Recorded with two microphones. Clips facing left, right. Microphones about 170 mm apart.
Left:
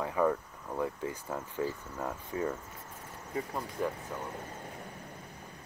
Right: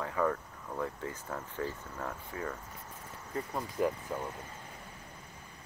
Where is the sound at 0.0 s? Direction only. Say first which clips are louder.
Left 3 dB; 15° left (ahead or behind).